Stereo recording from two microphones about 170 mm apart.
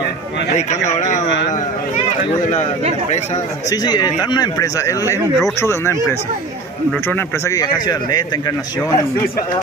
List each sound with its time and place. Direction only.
0.6 s a man's voice: 40° left (ahead or behind)
3.7 s speech: 25° left (ahead or behind)
7.1 s speech: 15° left (ahead or behind)